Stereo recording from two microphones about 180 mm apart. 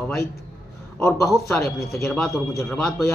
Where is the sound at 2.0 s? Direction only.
5° left (ahead or behind).